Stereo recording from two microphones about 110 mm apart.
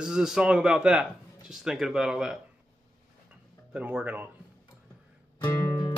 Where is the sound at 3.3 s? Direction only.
10° right (ahead or behind).